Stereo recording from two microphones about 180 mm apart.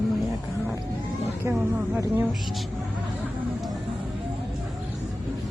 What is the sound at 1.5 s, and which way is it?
Speech, 10° right (ahead or behind).